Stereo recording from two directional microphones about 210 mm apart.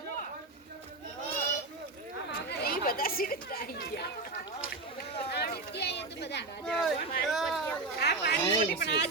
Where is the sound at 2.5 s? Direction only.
45° left (ahead or behind).